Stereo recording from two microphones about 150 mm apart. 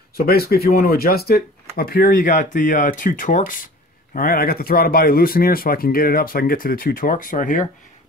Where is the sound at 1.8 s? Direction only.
70° left (ahead or behind).